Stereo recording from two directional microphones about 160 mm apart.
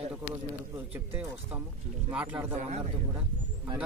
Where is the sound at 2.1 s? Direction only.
10° right (ahead or behind).